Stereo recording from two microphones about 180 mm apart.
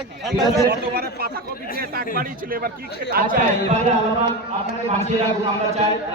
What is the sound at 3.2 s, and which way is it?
Speech, 55° right (ahead or behind).